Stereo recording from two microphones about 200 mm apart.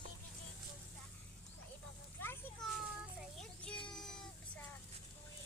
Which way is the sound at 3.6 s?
5° left (ahead or behind).